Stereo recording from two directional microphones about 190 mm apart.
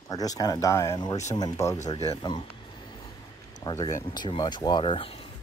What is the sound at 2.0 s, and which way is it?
Speech, 30° left (ahead or behind).